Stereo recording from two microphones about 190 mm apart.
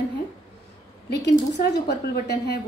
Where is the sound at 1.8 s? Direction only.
55° left (ahead or behind).